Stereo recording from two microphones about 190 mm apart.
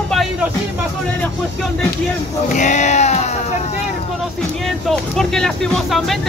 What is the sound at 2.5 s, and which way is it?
Music, 40° left (ahead or behind).